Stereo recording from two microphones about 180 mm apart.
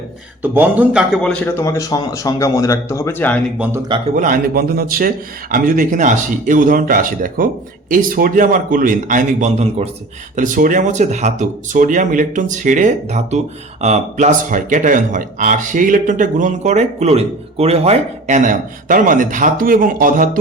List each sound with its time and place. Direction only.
0.4 s a man's voice: 10° right (ahead or behind)
1.3 s speech: 10° left (ahead or behind)
4.1 s speech: 50° right (ahead or behind)